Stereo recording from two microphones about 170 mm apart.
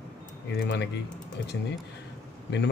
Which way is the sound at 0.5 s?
80° left.